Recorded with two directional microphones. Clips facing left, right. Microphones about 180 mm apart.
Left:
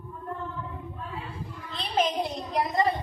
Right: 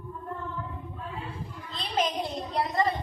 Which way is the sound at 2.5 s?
15° left (ahead or behind).